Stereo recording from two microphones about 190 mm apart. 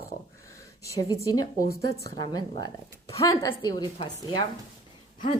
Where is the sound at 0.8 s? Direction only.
15° left (ahead or behind).